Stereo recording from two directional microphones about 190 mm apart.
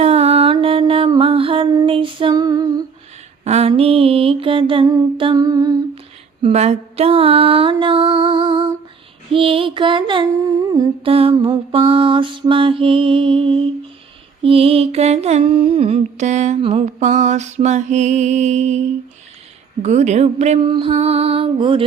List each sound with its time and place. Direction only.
0.0 s mantra: 35° right (ahead or behind)
3.4 s mantra: 35° right (ahead or behind)
6.4 s mantra: 35° right (ahead or behind)
19.8 s mantra: 35° right (ahead or behind)